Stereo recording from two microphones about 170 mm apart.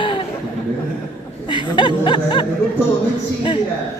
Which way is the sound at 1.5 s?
30° left (ahead or behind).